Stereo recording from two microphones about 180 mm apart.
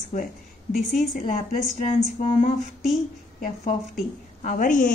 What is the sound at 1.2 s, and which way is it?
A woman's voice, 40° left (ahead or behind).